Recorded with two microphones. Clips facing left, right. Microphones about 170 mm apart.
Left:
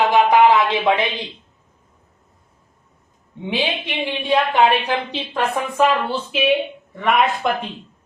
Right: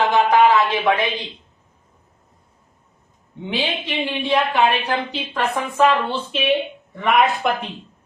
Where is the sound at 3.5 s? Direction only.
15° left (ahead or behind).